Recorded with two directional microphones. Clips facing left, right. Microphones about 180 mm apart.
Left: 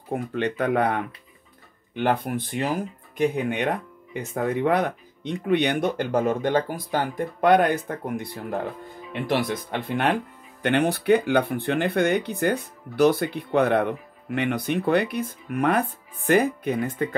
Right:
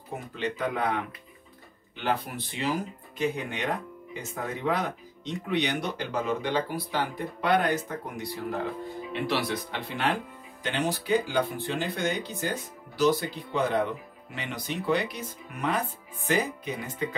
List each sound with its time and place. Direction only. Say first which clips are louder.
0.1 s speech: left 7 dB; 60° left (ahead or behind)